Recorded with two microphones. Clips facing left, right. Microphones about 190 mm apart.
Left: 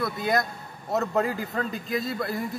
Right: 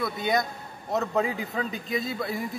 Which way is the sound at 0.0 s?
Centre (ahead or behind).